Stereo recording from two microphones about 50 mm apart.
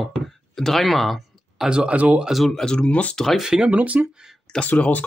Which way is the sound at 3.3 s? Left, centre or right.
Centre.